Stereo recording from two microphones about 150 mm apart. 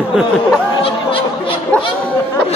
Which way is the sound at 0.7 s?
35° left (ahead or behind).